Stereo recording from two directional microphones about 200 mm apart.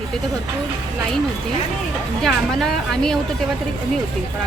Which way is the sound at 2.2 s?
Centre (ahead or behind).